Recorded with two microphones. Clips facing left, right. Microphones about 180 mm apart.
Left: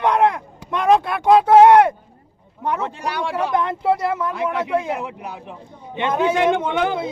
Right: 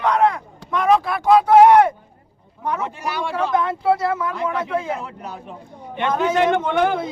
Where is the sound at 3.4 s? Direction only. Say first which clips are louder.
Right 1 dB; 15° left (ahead or behind).